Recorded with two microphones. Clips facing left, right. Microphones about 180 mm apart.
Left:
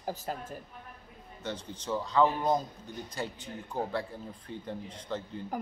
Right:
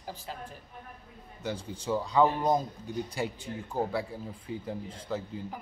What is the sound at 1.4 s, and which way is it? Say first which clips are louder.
A man's voice: right 3 dB; 10° right (ahead or behind).